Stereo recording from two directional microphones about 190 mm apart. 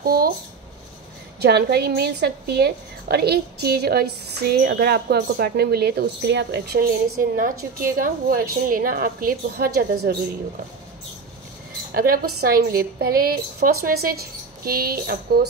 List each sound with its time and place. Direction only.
0.0 s speech: 50° right (ahead or behind)
1.4 s a woman's voice: 60° right (ahead or behind)
11.9 s a woman's voice: 50° right (ahead or behind)